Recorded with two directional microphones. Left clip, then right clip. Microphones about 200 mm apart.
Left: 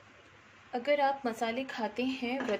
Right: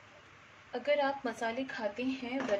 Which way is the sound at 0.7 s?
25° left (ahead or behind).